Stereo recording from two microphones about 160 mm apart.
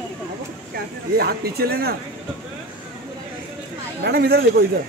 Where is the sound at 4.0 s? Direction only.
85° right.